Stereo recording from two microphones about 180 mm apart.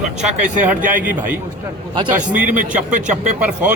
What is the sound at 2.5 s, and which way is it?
Speech, 45° right (ahead or behind).